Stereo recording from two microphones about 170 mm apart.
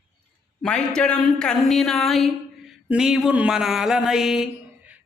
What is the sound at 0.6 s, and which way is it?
A woman's voice, 5° left (ahead or behind).